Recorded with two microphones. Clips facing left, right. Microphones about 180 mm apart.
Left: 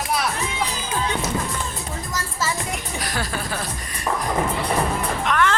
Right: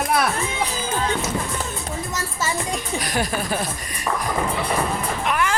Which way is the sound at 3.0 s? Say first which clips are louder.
Right 3 dB; 15° right (ahead or behind).